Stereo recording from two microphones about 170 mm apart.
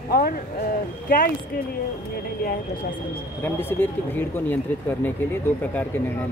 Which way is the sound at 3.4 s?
10° left (ahead or behind).